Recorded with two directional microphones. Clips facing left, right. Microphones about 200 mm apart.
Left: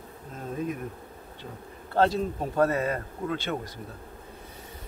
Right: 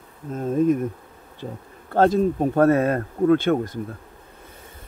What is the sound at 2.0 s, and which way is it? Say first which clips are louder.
Speech: right 6 dB; 50° right (ahead or behind).